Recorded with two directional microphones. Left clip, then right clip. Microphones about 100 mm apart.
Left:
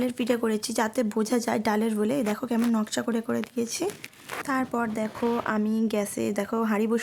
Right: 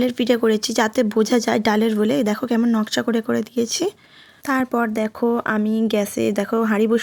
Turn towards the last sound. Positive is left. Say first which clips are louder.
# right 7 dB
turn(degrees=-35)  # may be behind; listen again after turning